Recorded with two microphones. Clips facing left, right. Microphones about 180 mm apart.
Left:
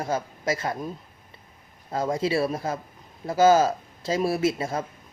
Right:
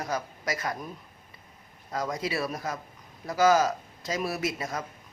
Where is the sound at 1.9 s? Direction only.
30° left (ahead or behind).